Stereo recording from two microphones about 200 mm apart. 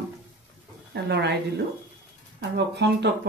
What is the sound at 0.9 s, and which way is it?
Speech, 55° right (ahead or behind).